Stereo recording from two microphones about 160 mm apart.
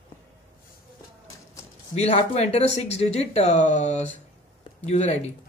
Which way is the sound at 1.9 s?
40° left (ahead or behind).